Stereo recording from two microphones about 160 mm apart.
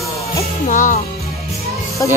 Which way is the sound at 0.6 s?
50° left (ahead or behind).